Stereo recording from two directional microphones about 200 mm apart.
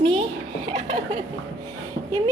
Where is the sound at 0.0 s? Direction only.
25° right (ahead or behind).